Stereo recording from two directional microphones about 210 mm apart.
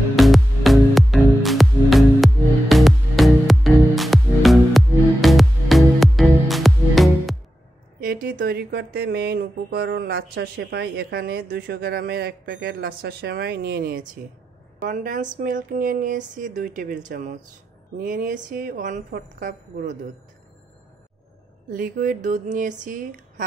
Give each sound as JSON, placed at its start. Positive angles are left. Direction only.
{"t": 0.1, "sound": "music", "side_deg": 0}
{"t": 8.0, "sound": "speech", "side_deg": -45}
{"t": 21.6, "sound": "speech", "side_deg": -40}